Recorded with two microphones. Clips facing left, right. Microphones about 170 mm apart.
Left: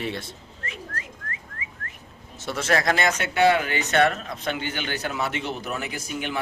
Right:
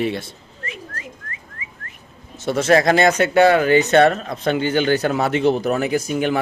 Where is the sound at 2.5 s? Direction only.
20° right (ahead or behind).